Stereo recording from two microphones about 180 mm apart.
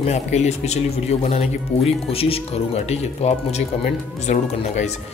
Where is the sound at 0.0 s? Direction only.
40° left (ahead or behind).